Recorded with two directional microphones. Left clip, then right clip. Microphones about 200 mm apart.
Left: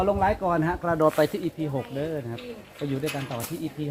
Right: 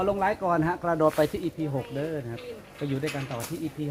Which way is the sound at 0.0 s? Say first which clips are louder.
Left 2 dB; 10° left (ahead or behind).